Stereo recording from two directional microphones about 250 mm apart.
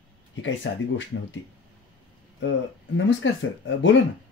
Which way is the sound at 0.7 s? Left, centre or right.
Left.